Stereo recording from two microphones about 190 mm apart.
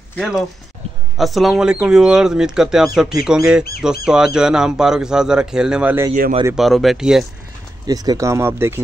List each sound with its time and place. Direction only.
1.1 s speech: centre (ahead or behind)
7.8 s speech: 20° right (ahead or behind)